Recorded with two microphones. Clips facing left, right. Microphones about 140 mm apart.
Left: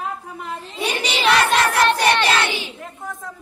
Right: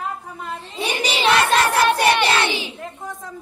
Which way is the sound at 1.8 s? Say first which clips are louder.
Even; 10° right (ahead or behind).